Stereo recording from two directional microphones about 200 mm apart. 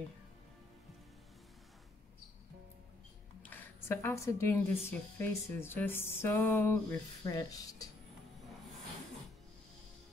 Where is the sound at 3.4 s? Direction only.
10° left (ahead or behind).